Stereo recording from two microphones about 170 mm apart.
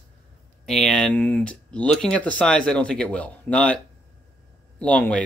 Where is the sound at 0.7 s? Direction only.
Centre (ahead or behind).